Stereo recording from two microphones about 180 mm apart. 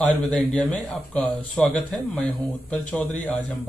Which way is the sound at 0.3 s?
5° left (ahead or behind).